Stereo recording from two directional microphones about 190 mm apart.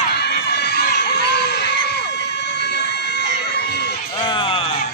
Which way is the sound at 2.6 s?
60° left (ahead or behind).